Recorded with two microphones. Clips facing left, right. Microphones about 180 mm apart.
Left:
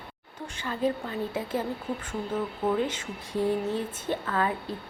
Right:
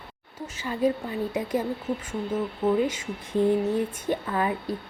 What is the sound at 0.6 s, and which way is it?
Speech, 10° right (ahead or behind).